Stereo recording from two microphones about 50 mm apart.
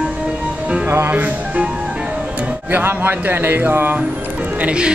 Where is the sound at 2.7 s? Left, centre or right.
Right.